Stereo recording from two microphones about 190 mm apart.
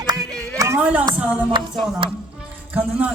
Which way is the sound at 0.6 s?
10° right (ahead or behind).